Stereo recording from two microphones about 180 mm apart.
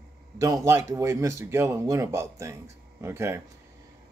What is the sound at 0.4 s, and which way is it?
Speech, 15° right (ahead or behind).